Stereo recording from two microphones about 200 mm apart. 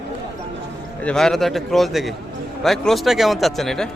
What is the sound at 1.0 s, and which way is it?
A man's voice, centre (ahead or behind).